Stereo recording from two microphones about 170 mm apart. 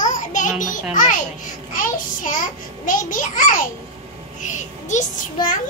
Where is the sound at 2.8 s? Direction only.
50° left (ahead or behind).